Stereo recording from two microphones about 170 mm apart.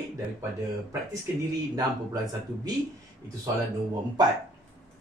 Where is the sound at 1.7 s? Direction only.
25° right (ahead or behind).